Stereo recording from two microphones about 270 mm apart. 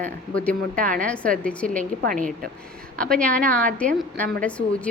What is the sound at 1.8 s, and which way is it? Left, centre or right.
Speech, right.